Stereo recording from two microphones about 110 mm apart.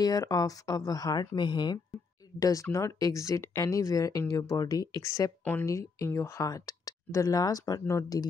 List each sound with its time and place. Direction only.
0.0 s speech: 35° left (ahead or behind)
2.4 s speech: 30° left (ahead or behind)
5.4 s speech: 15° left (ahead or behind)